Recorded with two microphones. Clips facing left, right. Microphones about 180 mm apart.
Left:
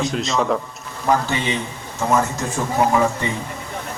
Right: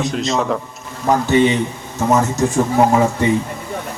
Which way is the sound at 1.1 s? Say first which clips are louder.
Right 2 dB; 25° right (ahead or behind).